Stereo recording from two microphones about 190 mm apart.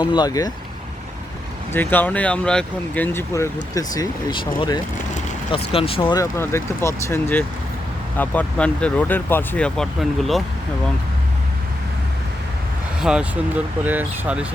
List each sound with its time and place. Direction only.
0.0 s speech: 20° left (ahead or behind)
1.7 s speech: 10° left (ahead or behind); by 6.2 s 25° left (ahead or behind)
6.3 s speech: 15° left (ahead or behind)
13.0 s speech: 5° right (ahead or behind)